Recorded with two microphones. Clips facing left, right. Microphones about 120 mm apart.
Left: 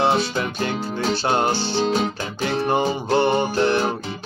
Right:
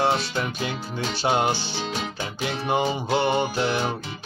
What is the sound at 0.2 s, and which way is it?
Music, 5° right (ahead or behind).